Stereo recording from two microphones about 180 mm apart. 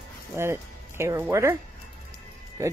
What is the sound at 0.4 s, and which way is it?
Speech, 15° right (ahead or behind).